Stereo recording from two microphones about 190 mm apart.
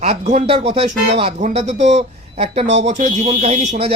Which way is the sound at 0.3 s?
35° right (ahead or behind).